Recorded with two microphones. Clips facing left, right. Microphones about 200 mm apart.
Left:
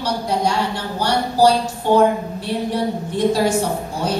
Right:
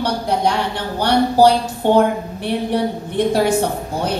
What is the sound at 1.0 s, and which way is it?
Speech, 60° right (ahead or behind).